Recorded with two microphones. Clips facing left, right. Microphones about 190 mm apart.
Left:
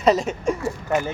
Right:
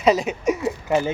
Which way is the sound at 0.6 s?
30° right (ahead or behind).